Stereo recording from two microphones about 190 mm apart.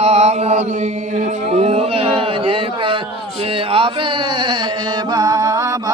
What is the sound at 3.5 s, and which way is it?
Music, 30° right (ahead or behind).